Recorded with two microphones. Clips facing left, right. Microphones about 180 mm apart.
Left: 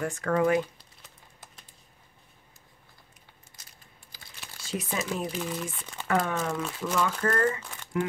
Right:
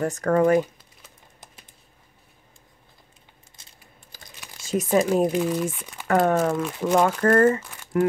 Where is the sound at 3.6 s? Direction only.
25° right (ahead or behind).